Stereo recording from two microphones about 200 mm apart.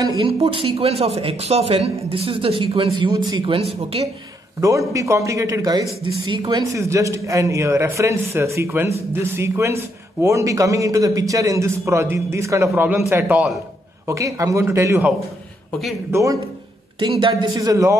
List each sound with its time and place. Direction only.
0.0 s a man's voice: 20° right (ahead or behind)
0.3 s speech: 30° right (ahead or behind)
4.6 s a man's voice: 15° right (ahead or behind)
17.0 s speech: 25° right (ahead or behind)